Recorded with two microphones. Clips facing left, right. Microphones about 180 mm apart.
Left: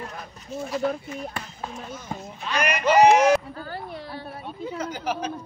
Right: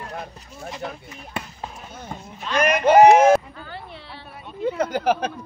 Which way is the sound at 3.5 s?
40° left (ahead or behind).